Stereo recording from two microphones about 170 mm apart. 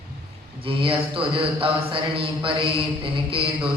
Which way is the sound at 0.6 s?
30° right (ahead or behind).